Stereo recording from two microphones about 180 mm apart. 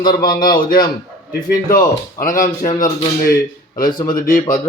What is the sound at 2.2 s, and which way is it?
Speech, 50° left (ahead or behind).